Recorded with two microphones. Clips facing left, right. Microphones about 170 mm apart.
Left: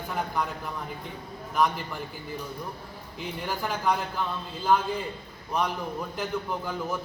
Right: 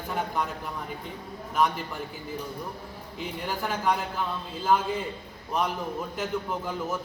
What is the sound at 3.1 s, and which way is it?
A man's voice, centre (ahead or behind).